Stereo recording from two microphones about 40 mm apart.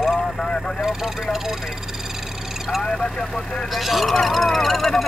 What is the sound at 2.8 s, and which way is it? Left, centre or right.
Speech, centre.